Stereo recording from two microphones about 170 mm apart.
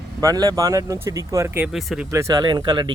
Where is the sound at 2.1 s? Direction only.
20° right (ahead or behind).